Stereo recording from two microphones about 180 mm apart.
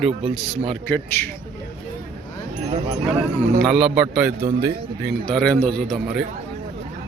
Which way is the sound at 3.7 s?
5° right (ahead or behind).